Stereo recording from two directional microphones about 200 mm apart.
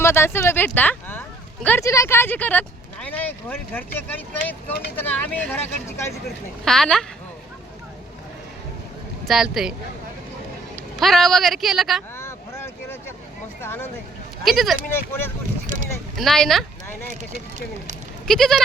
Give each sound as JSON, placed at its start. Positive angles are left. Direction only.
{"t": 0.0, "sound": "speech", "side_deg": 10}
{"t": 6.7, "sound": "speech", "side_deg": 5}
{"t": 9.2, "sound": "speech", "side_deg": 0}
{"t": 10.9, "sound": "speech", "side_deg": 0}
{"t": 12.1, "sound": "vehicle", "side_deg": 10}
{"t": 13.6, "sound": "speech", "side_deg": 10}
{"t": 14.4, "sound": "speech", "side_deg": 0}
{"t": 14.8, "sound": "speech", "side_deg": 10}
{"t": 15.6, "sound": "a sound", "side_deg": -40}
{"t": 16.1, "sound": "speech", "side_deg": 0}
{"t": 18.3, "sound": "speech", "side_deg": 0}